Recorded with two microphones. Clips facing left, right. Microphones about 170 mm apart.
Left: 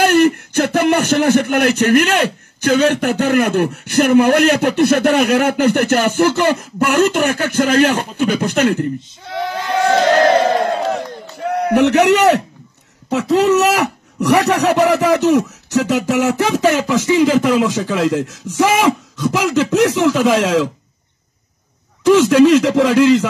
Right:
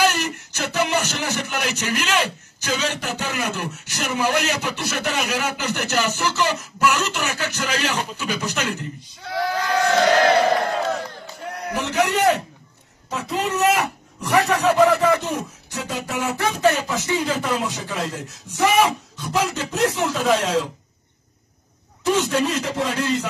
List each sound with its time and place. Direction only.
0.0 s a man's voice: 55° left (ahead or behind)
9.3 s a sound: 25° left (ahead or behind)
11.4 s a man's voice: 65° left (ahead or behind); by 20.6 s 90° left
22.0 s a man's voice: 90° left